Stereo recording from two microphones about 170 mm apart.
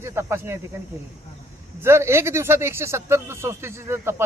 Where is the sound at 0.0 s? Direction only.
15° right (ahead or behind).